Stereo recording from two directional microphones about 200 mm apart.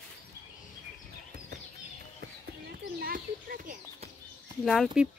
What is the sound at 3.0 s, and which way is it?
Bird, 45° right (ahead or behind).